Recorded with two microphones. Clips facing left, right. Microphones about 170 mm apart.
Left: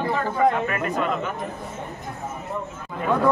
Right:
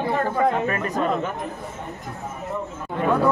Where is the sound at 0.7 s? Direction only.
35° right (ahead or behind).